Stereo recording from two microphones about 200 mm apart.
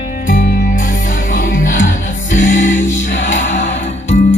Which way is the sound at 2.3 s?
40° left (ahead or behind).